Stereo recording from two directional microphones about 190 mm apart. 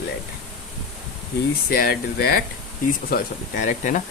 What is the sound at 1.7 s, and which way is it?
Speech, 50° left (ahead or behind).